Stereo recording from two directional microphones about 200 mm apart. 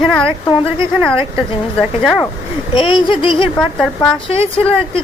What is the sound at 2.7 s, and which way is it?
Speech, 25° left (ahead or behind).